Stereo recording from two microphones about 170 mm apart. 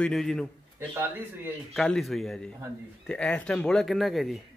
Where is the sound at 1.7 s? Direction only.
Centre (ahead or behind).